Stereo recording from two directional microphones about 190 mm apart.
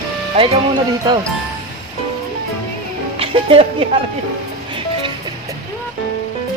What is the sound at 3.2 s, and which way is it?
Speech, 30° right (ahead or behind).